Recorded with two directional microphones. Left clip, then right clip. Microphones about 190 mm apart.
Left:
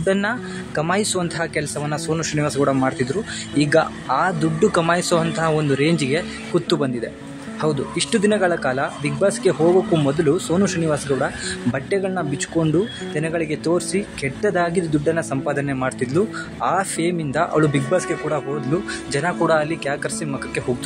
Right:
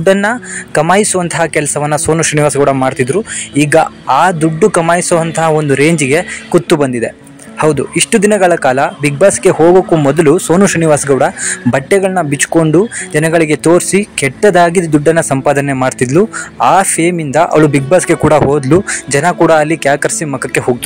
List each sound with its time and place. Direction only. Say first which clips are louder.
0.0 s speech: right 11 dB; 40° right (ahead or behind)